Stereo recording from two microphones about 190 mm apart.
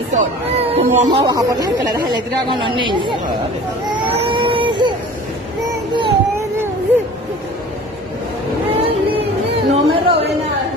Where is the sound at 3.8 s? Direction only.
30° right (ahead or behind).